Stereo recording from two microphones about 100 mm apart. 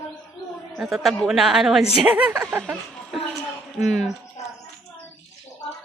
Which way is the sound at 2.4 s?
Centre (ahead or behind).